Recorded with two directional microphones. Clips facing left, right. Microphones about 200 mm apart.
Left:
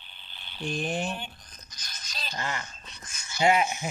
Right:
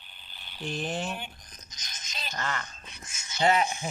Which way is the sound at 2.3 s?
15° left (ahead or behind).